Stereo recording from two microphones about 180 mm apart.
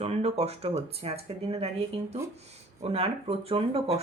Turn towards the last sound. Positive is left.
turn(degrees=-30)  # may be behind; listen again after turning